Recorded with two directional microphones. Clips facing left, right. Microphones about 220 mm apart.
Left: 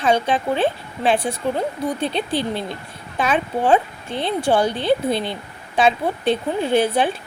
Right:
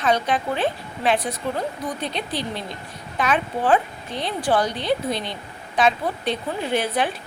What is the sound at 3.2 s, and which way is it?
Speech, 25° left (ahead or behind).